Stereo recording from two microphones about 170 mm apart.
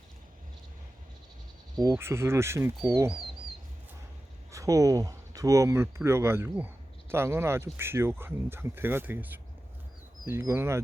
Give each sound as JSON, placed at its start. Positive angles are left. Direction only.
{"t": 1.7, "sound": "speech", "side_deg": -25}
{"t": 4.5, "sound": "speech", "side_deg": -20}